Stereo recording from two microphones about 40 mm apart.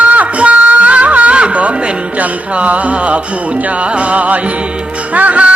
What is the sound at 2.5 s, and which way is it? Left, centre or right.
Music, right.